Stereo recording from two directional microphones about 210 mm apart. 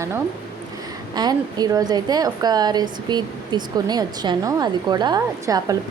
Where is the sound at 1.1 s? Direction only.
20° right (ahead or behind).